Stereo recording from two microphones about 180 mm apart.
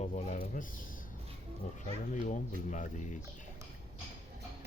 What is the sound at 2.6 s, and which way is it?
Speech, 45° left (ahead or behind).